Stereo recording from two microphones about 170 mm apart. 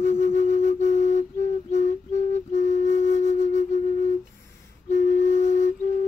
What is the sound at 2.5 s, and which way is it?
Flute, 45° left (ahead or behind).